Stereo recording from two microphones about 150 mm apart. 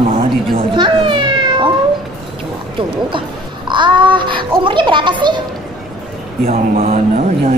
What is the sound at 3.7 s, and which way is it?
A man's voice, 30° right (ahead or behind).